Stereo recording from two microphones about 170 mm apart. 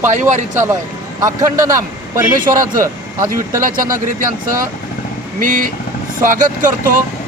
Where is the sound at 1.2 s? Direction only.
20° right (ahead or behind).